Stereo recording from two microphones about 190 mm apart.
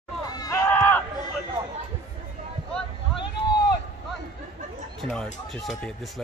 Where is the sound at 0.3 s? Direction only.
20° left (ahead or behind).